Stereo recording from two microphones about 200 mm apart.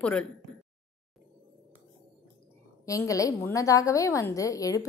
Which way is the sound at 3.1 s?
15° left (ahead or behind).